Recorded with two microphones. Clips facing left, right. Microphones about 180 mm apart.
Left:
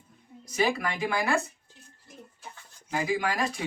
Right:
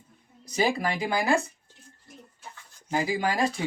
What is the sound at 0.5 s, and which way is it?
Speech, 30° right (ahead or behind).